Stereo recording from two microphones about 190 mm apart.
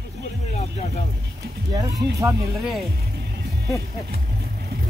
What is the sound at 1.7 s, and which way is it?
Speech, 20° right (ahead or behind).